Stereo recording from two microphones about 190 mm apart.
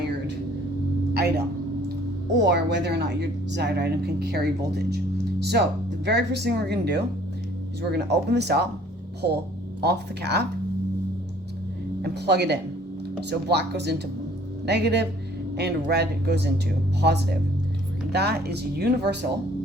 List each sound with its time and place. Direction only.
1.1 s speech: 55° right (ahead or behind)
9.8 s speech: 60° right (ahead or behind)
12.0 s speech: 60° right (ahead or behind)